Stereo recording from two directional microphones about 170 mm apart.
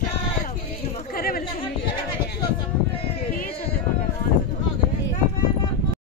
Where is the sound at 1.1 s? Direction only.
60° left (ahead or behind).